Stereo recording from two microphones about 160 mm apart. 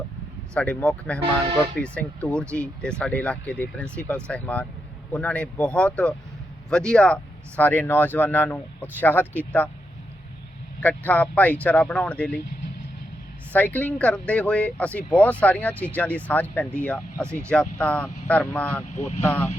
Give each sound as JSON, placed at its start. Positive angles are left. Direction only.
{"t": 0.5, "sound": "speech", "side_deg": 5}
{"t": 10.8, "sound": "speech", "side_deg": 10}
{"t": 13.5, "sound": "speech", "side_deg": 10}
{"t": 18.9, "sound": "speech", "side_deg": 45}
{"t": 19.2, "sound": "speech", "side_deg": 10}